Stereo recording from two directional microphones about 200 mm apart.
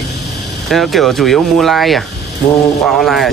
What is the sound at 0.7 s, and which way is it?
Speech, centre (ahead or behind).